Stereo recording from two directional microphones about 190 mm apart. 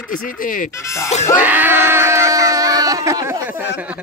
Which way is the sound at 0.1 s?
45° left (ahead or behind).